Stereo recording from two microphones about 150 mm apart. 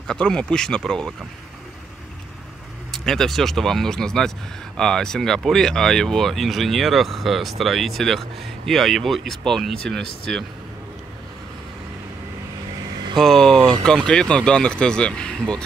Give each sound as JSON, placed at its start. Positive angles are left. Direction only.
{"t": 0.0, "sound": "speech", "side_deg": 5}
{"t": 2.9, "sound": "speech", "side_deg": 0}
{"t": 13.2, "sound": "speech", "side_deg": 5}